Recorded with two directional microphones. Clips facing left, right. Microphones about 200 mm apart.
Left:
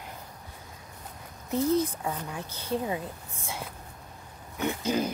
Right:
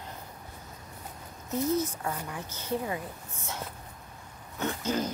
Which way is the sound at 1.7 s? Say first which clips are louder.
Left 3 dB; 30° left (ahead or behind).